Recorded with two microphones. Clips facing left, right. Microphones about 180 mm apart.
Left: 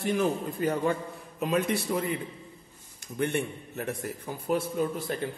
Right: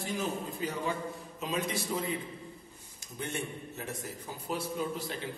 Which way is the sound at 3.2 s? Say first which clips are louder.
Left 8 dB; 60° left (ahead or behind).